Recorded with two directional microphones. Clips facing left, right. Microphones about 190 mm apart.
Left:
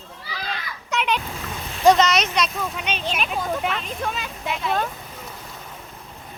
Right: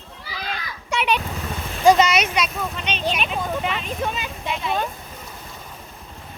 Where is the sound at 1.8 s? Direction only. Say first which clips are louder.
Right 1 dB; 10° right (ahead or behind).